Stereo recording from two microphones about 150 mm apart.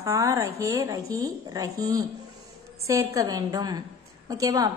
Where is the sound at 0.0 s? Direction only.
20° right (ahead or behind).